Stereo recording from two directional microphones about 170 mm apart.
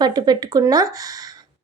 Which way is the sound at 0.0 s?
25° right (ahead or behind).